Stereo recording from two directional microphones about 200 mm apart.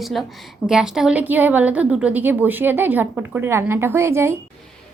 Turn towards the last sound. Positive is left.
turn(degrees=-10)  # may be behind; listen again after turning